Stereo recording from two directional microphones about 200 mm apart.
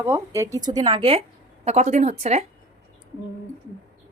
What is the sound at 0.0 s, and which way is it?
A woman's voice, 15° right (ahead or behind).